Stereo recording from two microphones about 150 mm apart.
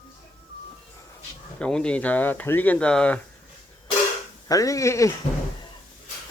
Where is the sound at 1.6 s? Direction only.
5° left (ahead or behind).